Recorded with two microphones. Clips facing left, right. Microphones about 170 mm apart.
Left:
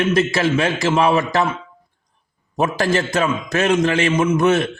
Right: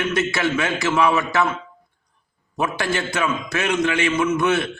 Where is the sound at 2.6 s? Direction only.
40° left (ahead or behind).